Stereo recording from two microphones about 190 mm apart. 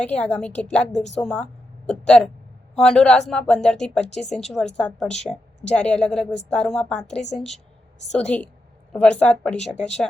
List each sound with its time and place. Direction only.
0.0 s a woman's voice: 5° left (ahead or behind)
0.9 s speech: 35° left (ahead or behind)
1.2 s speech: 5° left (ahead or behind)
4.0 s speech: 35° left (ahead or behind)
4.4 s speech: 5° left (ahead or behind)
8.2 s a woman's voice: 10° left (ahead or behind)